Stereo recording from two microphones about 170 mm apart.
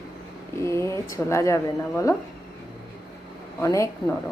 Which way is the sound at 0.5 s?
15° left (ahead or behind).